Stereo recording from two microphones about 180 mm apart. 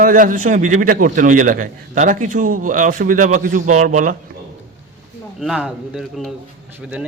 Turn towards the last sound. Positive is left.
turn(degrees=-5)  # may be behind; listen again after turning